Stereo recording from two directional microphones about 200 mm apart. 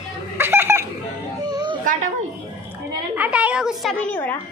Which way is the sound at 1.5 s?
20° right (ahead or behind).